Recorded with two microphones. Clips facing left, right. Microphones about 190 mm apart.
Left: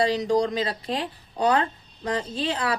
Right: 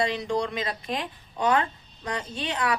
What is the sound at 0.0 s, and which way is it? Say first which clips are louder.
A woman's voice: left 5 dB; 35° left (ahead or behind).